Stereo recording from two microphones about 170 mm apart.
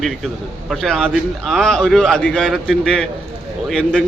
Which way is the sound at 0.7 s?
Centre (ahead or behind).